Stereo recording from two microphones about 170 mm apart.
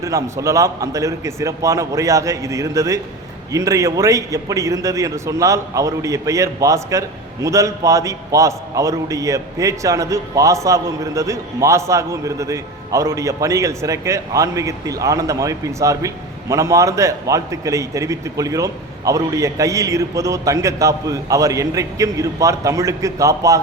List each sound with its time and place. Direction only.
0.0 s a man's voice: 20° right (ahead or behind)